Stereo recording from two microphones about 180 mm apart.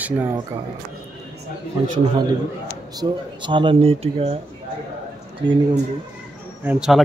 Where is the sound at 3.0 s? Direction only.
25° right (ahead or behind).